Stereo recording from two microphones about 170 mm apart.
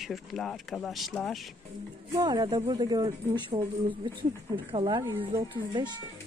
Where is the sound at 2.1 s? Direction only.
25° right (ahead or behind).